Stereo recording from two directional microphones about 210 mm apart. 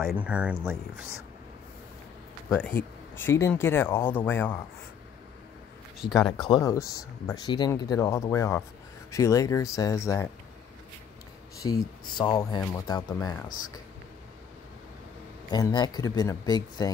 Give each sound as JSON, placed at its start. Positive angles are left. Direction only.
{"t": 0.0, "sound": "speech", "side_deg": -5}
{"t": 2.5, "sound": "speech", "side_deg": 10}
{"t": 6.0, "sound": "speech", "side_deg": 20}
{"t": 11.6, "sound": "speech", "side_deg": 20}
{"t": 15.5, "sound": "speech", "side_deg": 20}